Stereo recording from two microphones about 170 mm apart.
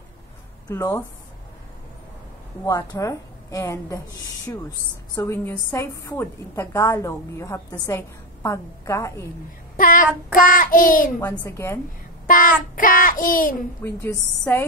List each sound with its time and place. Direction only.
0.7 s a woman's voice: 20° left (ahead or behind)
2.6 s a woman's voice: 20° left (ahead or behind)
9.8 s child singing: 55° left (ahead or behind)
11.4 s a woman's voice: 15° left (ahead or behind)
12.3 s child singing: 55° left (ahead or behind)
13.8 s a woman's voice: 10° left (ahead or behind)